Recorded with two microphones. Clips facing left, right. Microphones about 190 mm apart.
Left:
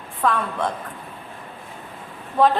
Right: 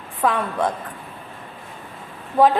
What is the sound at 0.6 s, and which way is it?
Speech, 15° right (ahead or behind).